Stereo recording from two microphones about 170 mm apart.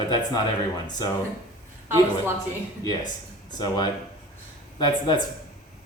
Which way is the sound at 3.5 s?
25° left (ahead or behind).